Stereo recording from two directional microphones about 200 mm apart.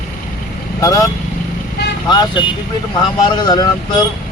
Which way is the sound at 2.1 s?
20° left (ahead or behind).